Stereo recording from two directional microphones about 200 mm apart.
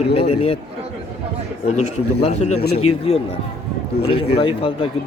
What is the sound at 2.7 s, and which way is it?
Speech, 90° left.